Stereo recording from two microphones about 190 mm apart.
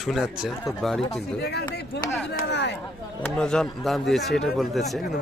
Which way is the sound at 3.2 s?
5° left (ahead or behind).